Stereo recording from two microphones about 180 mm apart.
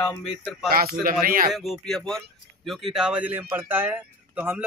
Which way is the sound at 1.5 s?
Centre (ahead or behind).